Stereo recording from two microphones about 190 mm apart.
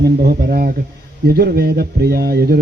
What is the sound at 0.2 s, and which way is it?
Speech, 55° right (ahead or behind).